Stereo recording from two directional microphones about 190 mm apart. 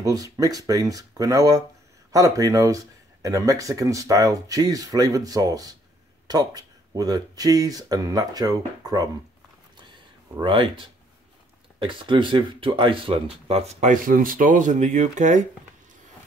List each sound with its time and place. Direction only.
0.0 s speech: 20° right (ahead or behind)
10.3 s speech: 25° right (ahead or behind)